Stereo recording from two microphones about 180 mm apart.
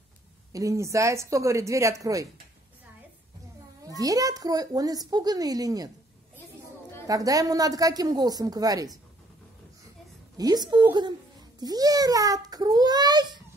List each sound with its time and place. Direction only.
0.5 s speech: 20° right (ahead or behind)
3.8 s a child's voice: 20° right (ahead or behind)
7.1 s a child's voice: 20° right (ahead or behind)
10.3 s a child's voice: 20° right (ahead or behind)